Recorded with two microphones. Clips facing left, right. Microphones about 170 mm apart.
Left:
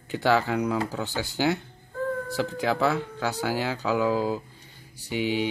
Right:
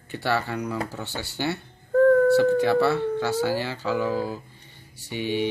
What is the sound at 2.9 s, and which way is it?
Speech, 15° left (ahead or behind).